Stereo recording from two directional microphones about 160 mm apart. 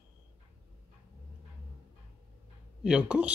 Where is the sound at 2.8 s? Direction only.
5° right (ahead or behind).